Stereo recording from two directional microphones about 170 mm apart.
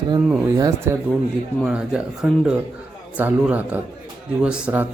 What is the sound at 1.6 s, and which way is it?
Speech, 5° right (ahead or behind).